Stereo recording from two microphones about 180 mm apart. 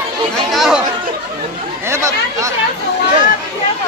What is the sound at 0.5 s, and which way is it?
Speech, centre (ahead or behind).